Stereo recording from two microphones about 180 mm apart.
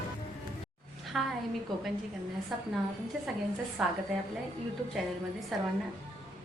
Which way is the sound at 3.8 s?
5° right (ahead or behind).